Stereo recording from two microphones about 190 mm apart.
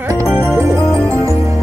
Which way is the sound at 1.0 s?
15° right (ahead or behind).